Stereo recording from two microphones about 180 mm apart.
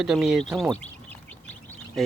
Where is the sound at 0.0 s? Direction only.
Centre (ahead or behind).